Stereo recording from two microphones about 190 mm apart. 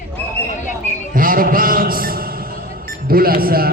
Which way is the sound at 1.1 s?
45° right (ahead or behind).